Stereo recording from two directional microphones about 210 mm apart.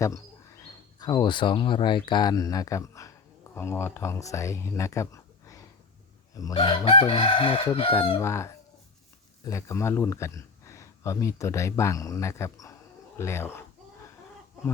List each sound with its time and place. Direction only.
0.9 s speech: 20° left (ahead or behind)
8.2 s a man's voice: 15° left (ahead or behind)